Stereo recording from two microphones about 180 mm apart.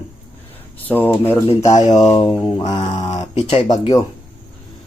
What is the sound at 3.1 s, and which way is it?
Speech, 40° left (ahead or behind).